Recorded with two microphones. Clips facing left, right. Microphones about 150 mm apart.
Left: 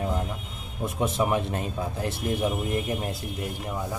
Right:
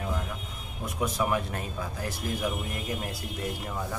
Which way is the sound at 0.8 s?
25° left (ahead or behind).